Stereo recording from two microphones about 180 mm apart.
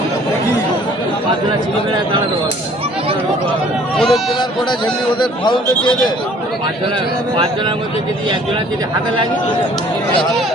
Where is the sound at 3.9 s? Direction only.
Centre (ahead or behind).